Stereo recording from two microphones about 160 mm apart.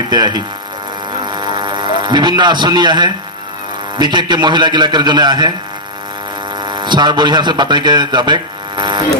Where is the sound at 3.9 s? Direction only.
30° right (ahead or behind).